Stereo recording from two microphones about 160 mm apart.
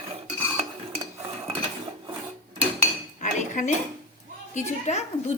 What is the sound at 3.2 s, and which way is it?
Dishes, 50° left (ahead or behind).